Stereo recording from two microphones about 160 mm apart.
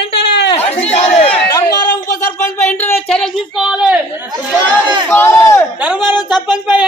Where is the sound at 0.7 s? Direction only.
40° left (ahead or behind).